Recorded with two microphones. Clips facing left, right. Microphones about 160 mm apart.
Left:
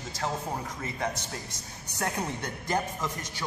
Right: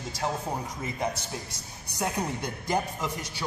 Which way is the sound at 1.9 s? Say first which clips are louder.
Right 2 dB; 10° right (ahead or behind).